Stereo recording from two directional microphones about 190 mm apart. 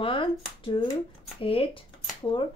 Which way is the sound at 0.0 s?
30° left (ahead or behind).